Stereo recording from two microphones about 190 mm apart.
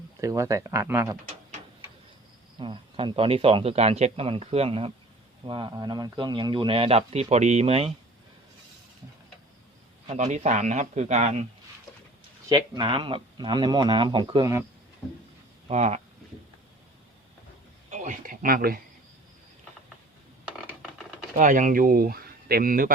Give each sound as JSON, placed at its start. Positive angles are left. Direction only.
{"t": 0.2, "sound": "speech", "side_deg": -15}
{"t": 2.6, "sound": "a man's voice", "side_deg": -25}
{"t": 10.1, "sound": "speech", "side_deg": -35}
{"t": 12.5, "sound": "a man's voice", "side_deg": -20}
{"t": 15.7, "sound": "speech", "side_deg": -35}
{"t": 17.9, "sound": "speech", "side_deg": -40}
{"t": 20.4, "sound": "mechanisms", "side_deg": -5}
{"t": 21.3, "sound": "speech", "side_deg": -40}